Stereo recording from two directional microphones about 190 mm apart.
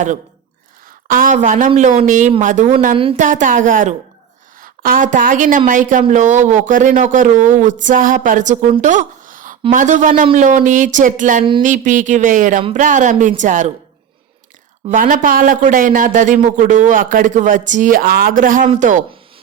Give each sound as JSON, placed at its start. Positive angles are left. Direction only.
{"t": 1.0, "sound": "speech", "side_deg": -45}
{"t": 2.9, "sound": "a woman's voice", "side_deg": -30}
{"t": 3.2, "sound": "speech", "side_deg": -40}
{"t": 8.8, "sound": "a sound", "side_deg": -40}
{"t": 9.7, "sound": "speech", "side_deg": -40}
{"t": 14.8, "sound": "speech", "side_deg": -45}